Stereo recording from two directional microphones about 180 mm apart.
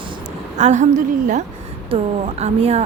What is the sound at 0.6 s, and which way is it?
Speech, 40° right (ahead or behind).